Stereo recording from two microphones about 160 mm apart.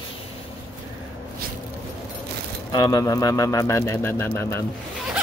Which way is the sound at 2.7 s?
25° left (ahead or behind).